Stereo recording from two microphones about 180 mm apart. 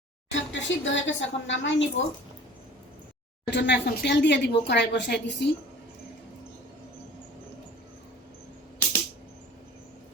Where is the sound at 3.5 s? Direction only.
70° left (ahead or behind).